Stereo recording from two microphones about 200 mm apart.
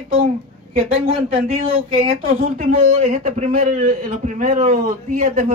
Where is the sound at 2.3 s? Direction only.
40° right (ahead or behind).